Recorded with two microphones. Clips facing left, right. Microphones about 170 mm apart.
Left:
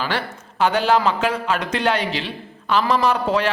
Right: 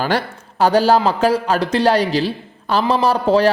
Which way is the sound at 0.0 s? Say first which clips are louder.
Right 5 dB; 40° right (ahead or behind).